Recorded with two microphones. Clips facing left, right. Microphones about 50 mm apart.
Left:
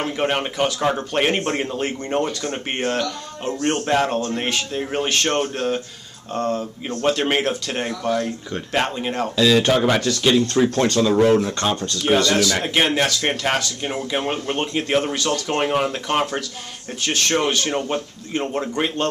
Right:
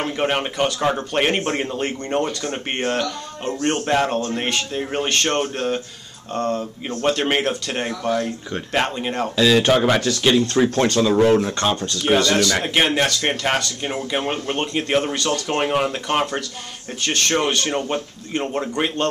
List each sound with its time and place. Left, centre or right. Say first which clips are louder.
0.0 s a man's voice: even; centre
10.5 s speech: even; right; by 19.0 s centre